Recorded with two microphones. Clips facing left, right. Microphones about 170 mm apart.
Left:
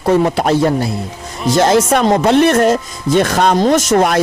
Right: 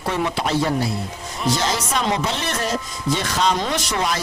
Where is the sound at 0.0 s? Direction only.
45° left (ahead or behind).